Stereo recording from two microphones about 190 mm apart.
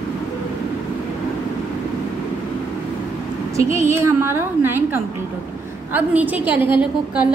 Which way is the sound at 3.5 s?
15° right (ahead or behind).